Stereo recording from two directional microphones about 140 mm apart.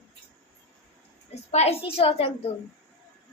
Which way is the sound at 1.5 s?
50° left (ahead or behind).